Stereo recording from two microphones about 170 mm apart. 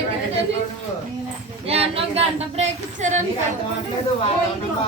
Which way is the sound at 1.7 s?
35° right (ahead or behind).